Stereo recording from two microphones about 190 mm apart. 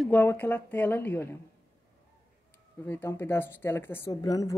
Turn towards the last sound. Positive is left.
turn(degrees=20)  # may be behind; listen again after turning